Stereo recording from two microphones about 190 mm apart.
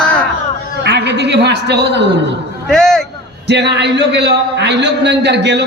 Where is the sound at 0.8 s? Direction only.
65° right (ahead or behind).